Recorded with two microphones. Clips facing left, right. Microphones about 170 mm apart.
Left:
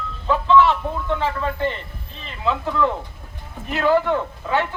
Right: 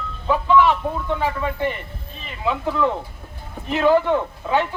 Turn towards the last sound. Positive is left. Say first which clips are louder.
# right 1 dB
turn(degrees=-15)  # may be behind; listen again after turning